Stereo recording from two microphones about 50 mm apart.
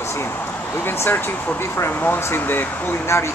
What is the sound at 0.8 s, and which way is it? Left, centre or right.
Speech, left.